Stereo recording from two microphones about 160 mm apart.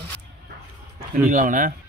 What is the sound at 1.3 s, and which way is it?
Speech, 55° right (ahead or behind).